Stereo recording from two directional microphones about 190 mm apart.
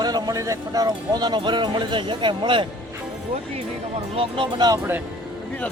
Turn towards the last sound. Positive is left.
turn(degrees=-15)  # may be behind; listen again after turning